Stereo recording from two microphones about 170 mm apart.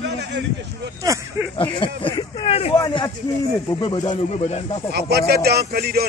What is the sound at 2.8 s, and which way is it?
Speech, 25° left (ahead or behind).